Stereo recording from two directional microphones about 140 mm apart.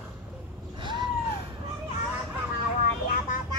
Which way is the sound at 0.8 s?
35° right (ahead or behind).